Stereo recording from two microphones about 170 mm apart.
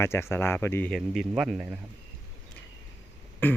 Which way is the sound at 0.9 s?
Centre (ahead or behind).